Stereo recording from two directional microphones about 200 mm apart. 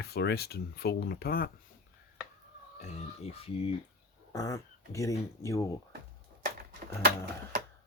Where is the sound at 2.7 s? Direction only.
35° left (ahead or behind).